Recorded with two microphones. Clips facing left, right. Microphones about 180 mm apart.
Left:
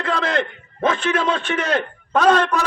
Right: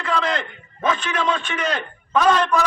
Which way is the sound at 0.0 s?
60° left (ahead or behind).